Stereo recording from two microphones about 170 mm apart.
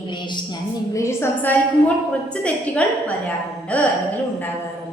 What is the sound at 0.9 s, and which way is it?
A woman's voice, 15° left (ahead or behind).